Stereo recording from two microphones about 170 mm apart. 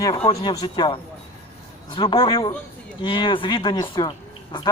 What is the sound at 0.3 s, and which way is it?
Speech, 25° left (ahead or behind).